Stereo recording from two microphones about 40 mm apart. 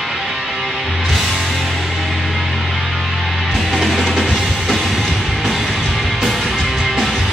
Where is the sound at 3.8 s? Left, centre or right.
Centre.